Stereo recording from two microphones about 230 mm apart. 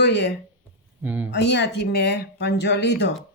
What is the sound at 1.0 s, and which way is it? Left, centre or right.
Speech, centre.